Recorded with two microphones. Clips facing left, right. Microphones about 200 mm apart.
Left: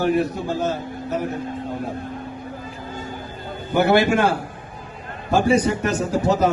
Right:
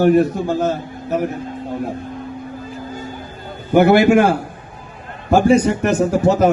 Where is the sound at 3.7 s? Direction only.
50° right (ahead or behind).